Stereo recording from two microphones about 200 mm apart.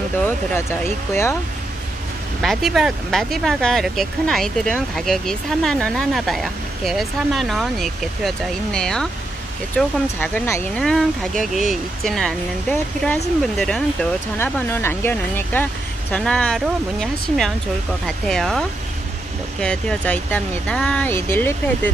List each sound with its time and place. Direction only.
0.2 s speech: 10° left (ahead or behind)
2.4 s speech: centre (ahead or behind)